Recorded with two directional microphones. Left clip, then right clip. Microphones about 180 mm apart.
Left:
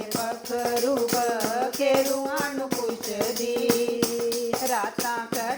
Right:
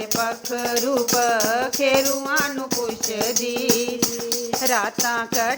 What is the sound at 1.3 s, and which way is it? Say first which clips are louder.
Music: right 5 dB; 40° right (ahead or behind).